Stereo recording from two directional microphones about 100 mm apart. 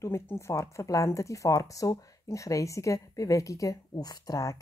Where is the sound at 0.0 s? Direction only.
25° left (ahead or behind).